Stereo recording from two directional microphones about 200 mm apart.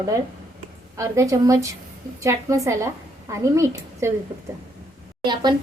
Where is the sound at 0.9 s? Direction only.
15° right (ahead or behind).